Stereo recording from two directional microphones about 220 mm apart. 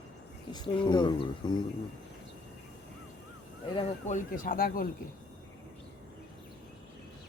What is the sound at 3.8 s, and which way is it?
Speech, 35° left (ahead or behind).